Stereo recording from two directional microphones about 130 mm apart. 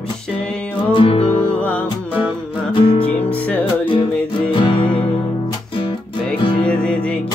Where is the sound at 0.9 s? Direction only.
45° left (ahead or behind).